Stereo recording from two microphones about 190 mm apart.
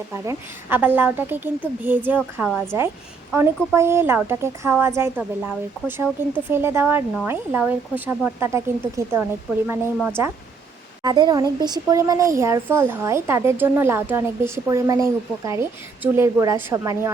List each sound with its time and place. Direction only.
0.1 s speech: 10° right (ahead or behind)
11.0 s speech: 20° right (ahead or behind)